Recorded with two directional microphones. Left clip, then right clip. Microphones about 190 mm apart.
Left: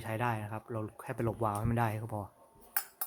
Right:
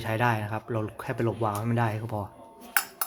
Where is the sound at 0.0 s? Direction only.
10° left (ahead or behind).